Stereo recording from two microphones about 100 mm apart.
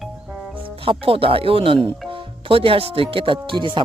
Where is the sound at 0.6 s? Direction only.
65° right (ahead or behind).